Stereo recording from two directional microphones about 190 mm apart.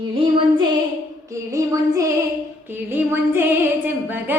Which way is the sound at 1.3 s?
15° right (ahead or behind).